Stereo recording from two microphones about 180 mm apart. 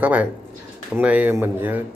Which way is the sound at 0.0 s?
10° right (ahead or behind).